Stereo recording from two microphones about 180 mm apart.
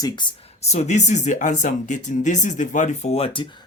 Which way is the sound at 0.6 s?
40° left (ahead or behind).